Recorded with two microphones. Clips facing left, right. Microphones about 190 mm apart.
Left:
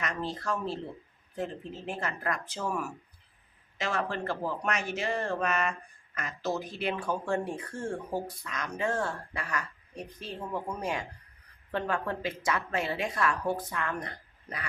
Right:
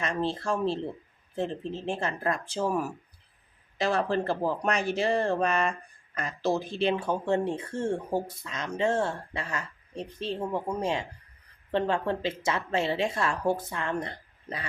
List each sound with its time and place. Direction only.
0.0 s speech: 30° right (ahead or behind)